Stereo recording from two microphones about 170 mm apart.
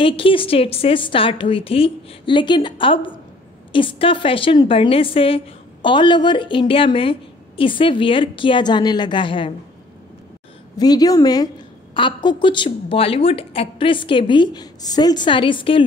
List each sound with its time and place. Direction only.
0.0 s a woman's voice: 30° left (ahead or behind)
10.8 s a woman's voice: 20° left (ahead or behind)